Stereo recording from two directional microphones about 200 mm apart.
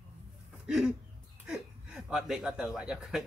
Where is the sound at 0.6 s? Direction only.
5° right (ahead or behind).